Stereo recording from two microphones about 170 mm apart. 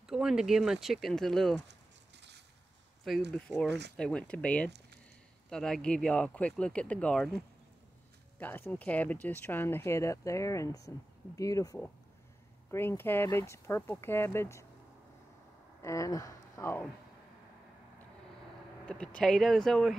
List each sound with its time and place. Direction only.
0.0 s speech: 5° right (ahead or behind)
1.7 s a sound: 90° right
3.3 s speech: 5° left (ahead or behind)
3.6 s speech: 85° right
3.9 s speech: 5° left (ahead or behind)
15.8 s speech: 15° left (ahead or behind)
18.9 s speech: 5° left (ahead or behind)